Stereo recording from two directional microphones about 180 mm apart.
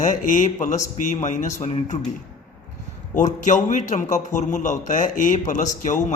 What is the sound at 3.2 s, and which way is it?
A man's voice, 45° left (ahead or behind).